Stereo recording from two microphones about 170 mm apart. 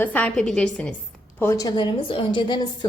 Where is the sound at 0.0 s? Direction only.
10° left (ahead or behind).